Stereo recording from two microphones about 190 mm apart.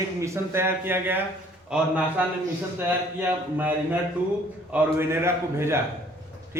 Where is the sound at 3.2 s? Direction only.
10° right (ahead or behind).